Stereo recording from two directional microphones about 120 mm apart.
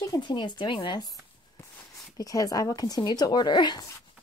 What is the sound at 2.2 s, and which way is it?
A woman's voice, 30° left (ahead or behind).